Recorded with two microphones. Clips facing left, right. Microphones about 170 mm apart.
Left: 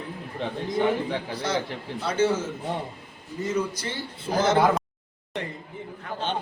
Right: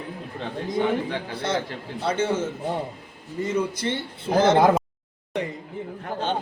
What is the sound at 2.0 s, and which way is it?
A man's voice, 30° right (ahead or behind).